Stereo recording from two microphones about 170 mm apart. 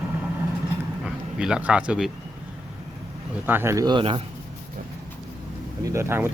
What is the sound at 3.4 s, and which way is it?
Speech, 15° right (ahead or behind).